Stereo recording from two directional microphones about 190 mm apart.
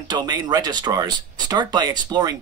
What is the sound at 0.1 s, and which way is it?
Speech, 20° right (ahead or behind).